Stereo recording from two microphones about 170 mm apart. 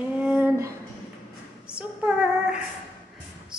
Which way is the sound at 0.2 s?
10° right (ahead or behind).